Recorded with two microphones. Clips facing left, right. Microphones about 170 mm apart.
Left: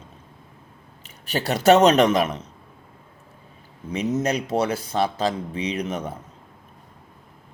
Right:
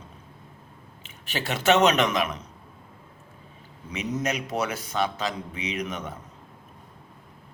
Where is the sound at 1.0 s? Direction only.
40° left (ahead or behind).